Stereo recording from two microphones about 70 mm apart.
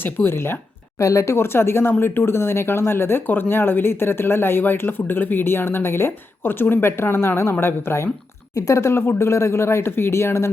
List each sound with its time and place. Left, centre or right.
0.0 s speech: left
8.5 s speech: left